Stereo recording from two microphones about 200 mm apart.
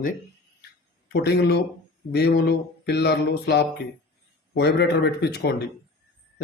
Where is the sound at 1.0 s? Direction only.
60° left (ahead or behind).